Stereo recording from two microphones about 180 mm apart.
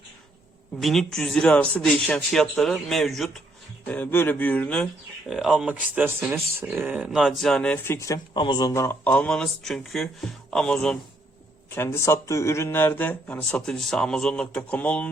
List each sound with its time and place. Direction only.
0.8 s speech: centre (ahead or behind)
7.9 s speech: 15° left (ahead or behind)